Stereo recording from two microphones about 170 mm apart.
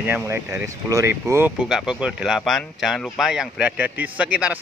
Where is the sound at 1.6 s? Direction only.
5° right (ahead or behind).